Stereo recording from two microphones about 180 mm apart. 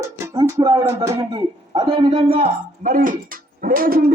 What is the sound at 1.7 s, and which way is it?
Speech, 30° right (ahead or behind).